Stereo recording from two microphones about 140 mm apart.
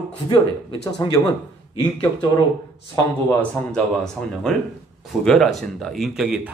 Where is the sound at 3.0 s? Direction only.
15° left (ahead or behind).